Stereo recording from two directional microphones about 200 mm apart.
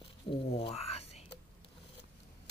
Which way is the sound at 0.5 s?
30° left (ahead or behind).